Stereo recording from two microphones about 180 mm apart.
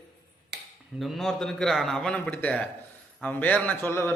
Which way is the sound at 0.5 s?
70° right (ahead or behind).